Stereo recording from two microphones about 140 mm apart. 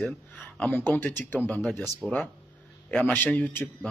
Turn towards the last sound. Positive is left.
turn(degrees=15)  # may be behind; listen again after turning